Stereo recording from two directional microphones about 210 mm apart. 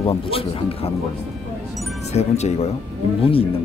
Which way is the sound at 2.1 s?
30° left (ahead or behind).